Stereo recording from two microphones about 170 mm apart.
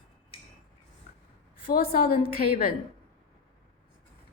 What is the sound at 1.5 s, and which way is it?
A woman's voice, 60° left (ahead or behind).